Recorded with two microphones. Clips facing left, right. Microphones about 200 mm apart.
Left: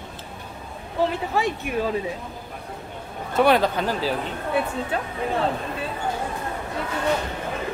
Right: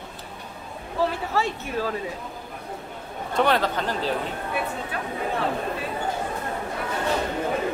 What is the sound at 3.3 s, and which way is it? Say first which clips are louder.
Speech: left 4 dB; 10° left (ahead or behind).